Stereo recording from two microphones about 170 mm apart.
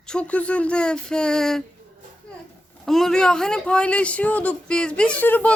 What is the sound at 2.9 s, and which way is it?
Speech, centre (ahead or behind).